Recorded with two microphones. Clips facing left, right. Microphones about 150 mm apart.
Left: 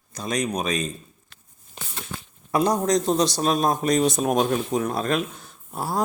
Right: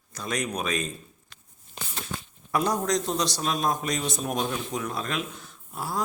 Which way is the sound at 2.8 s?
40° left (ahead or behind).